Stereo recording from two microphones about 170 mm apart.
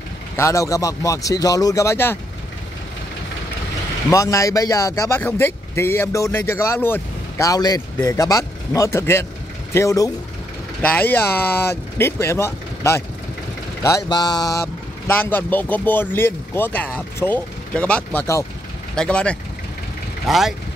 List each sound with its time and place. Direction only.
0.4 s a man's voice: 15° left (ahead or behind)
4.1 s a man's voice: 20° left (ahead or behind); by 20.5 s centre (ahead or behind)